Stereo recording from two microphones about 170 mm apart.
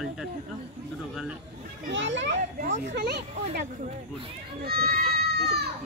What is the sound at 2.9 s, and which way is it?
Speech, 80° right.